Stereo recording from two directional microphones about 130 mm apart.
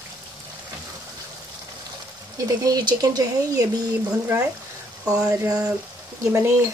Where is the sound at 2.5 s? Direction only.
30° right (ahead or behind).